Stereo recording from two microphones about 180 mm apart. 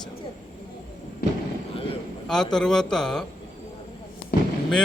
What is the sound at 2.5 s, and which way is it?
Speech, 5° left (ahead or behind).